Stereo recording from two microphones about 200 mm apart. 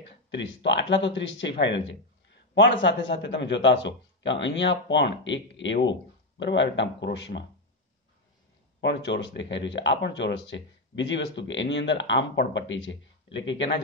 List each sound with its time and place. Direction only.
0.3 s speech: 65° left (ahead or behind)
8.8 s speech: 60° left (ahead or behind)